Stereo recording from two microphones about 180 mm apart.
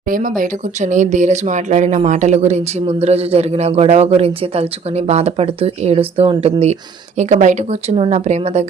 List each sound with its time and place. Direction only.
0.1 s speech: 50° right (ahead or behind)